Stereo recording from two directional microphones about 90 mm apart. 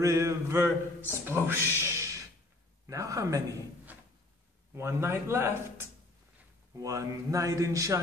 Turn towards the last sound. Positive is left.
turn(degrees=-40)  # may be behind; listen again after turning